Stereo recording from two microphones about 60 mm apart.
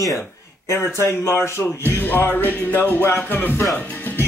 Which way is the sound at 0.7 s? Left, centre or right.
Left.